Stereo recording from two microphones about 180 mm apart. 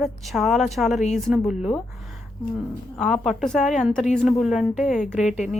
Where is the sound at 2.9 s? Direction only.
5° left (ahead or behind).